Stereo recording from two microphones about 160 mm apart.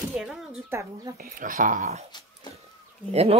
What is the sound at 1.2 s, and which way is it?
Speech, 60° right (ahead or behind).